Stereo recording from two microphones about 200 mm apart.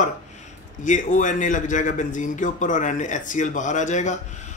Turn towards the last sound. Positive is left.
turn(degrees=35)  # may be behind; listen again after turning